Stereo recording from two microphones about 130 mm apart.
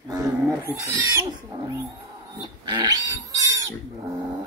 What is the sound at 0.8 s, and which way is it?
Pig, 25° right (ahead or behind).